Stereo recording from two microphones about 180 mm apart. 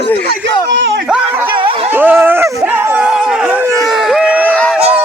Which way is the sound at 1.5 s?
30° right (ahead or behind).